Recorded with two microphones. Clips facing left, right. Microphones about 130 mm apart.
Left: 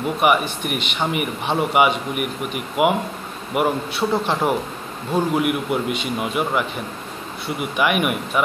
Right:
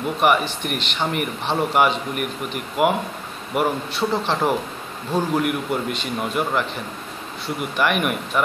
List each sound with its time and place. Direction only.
0.2 s a man's voice: 5° left (ahead or behind)
7.7 s a man's voice: 5° left (ahead or behind)